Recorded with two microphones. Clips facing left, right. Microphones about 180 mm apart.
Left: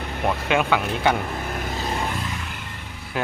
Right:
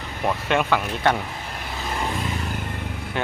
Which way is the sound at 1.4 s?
50° left (ahead or behind).